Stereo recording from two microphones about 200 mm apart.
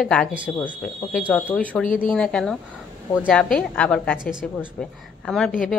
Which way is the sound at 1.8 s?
40° left (ahead or behind).